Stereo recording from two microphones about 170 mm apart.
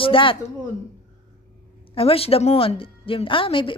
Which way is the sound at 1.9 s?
35° left (ahead or behind).